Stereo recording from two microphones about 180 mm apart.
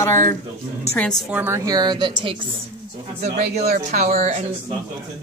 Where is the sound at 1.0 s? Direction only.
5° left (ahead or behind).